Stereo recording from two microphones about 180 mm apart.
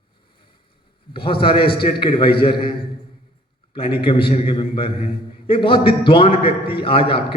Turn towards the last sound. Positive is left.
turn(degrees=30)  # may be behind; listen again after turning